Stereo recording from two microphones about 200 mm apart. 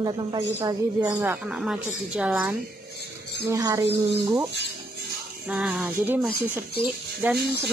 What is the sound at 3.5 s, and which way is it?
Speech, 15° right (ahead or behind).